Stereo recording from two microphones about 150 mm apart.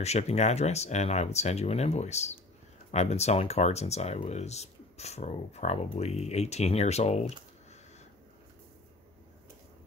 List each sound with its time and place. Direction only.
0.0 s speech: 45° left (ahead or behind)